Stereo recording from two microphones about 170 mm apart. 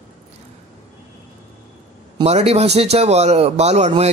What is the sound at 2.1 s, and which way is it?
A man's voice, 35° right (ahead or behind).